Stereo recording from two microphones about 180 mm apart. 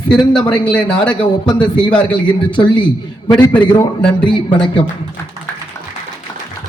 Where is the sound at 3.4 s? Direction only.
15° left (ahead or behind).